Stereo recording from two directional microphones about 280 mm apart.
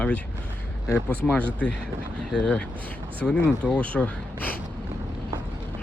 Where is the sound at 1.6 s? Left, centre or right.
Centre.